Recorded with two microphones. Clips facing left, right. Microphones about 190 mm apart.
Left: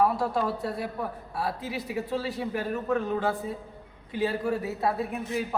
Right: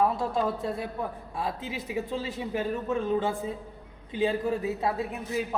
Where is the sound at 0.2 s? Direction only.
20° right (ahead or behind).